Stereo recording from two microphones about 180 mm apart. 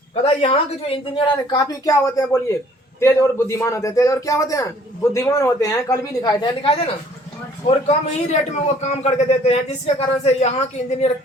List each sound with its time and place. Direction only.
0.1 s a man's voice: 35° left (ahead or behind)